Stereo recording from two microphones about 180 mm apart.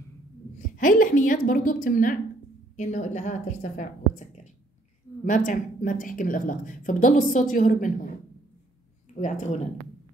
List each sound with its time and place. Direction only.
0.7 s a woman's voice: 50° left (ahead or behind)